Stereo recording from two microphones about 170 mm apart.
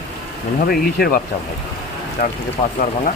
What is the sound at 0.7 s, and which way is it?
Speech, 65° left (ahead or behind).